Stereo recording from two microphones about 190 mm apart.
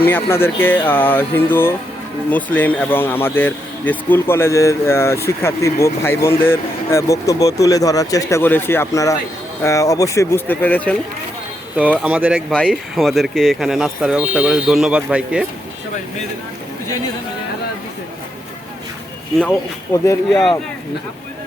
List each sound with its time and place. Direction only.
0.0 s speech: 10° left (ahead or behind)
12.0 s speech: 5° right (ahead or behind)
19.4 s speech: 10° left (ahead or behind)